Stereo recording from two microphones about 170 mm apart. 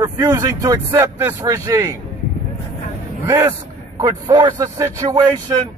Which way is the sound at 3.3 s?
20° right (ahead or behind).